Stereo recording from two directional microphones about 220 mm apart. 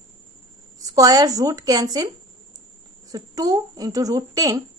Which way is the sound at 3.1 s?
15° right (ahead or behind).